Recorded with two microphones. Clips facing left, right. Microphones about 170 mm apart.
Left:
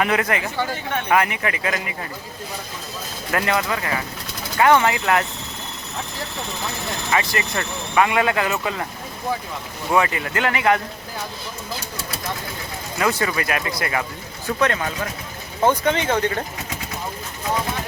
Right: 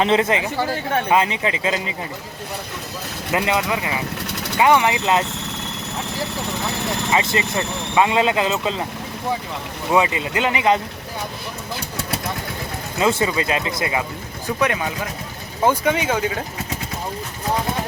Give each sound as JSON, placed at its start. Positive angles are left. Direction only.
{"t": 0.0, "sound": "speech", "side_deg": -25}
{"t": 3.3, "sound": "speech", "side_deg": -15}
{"t": 7.1, "sound": "speech", "side_deg": -20}
{"t": 9.9, "sound": "speech", "side_deg": -20}
{"t": 13.0, "sound": "speech", "side_deg": -25}